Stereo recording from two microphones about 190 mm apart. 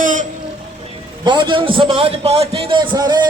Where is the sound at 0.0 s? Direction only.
45° right (ahead or behind).